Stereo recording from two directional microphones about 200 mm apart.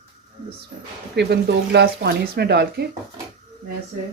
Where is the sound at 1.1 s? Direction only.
55° right (ahead or behind).